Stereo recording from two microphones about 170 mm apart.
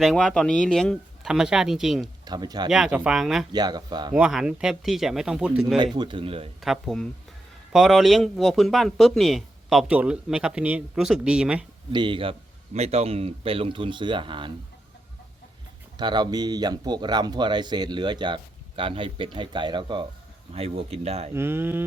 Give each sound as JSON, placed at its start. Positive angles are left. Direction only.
{"t": 0.0, "sound": "speech", "side_deg": 0}
{"t": 2.2, "sound": "speech", "side_deg": -25}
{"t": 2.6, "sound": "speech", "side_deg": -5}
{"t": 3.5, "sound": "speech", "side_deg": -25}
{"t": 4.1, "sound": "speech", "side_deg": -5}
{"t": 5.8, "sound": "speech", "side_deg": -25}
{"t": 6.6, "sound": "speech", "side_deg": 0}
{"t": 11.9, "sound": "a man's voice", "side_deg": -30}
{"t": 16.0, "sound": "a man's voice", "side_deg": -25}
{"t": 21.3, "sound": "speech", "side_deg": -15}